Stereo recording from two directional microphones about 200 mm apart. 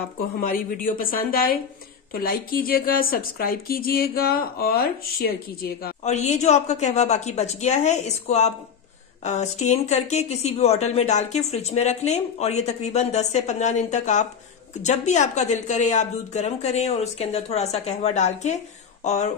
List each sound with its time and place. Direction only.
0.2 s a woman's voice: 45° left (ahead or behind)
6.0 s speech: 35° left (ahead or behind)